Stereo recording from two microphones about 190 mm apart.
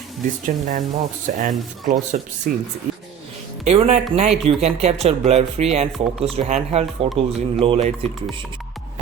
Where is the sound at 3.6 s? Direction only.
35° right (ahead or behind).